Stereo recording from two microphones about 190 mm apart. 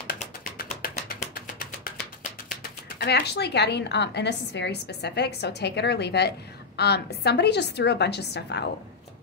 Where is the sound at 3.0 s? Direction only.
60° left (ahead or behind).